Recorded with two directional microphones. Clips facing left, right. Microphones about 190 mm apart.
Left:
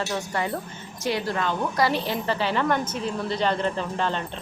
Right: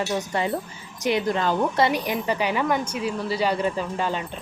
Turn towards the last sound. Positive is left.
turn(degrees=-10)  # may be behind; listen again after turning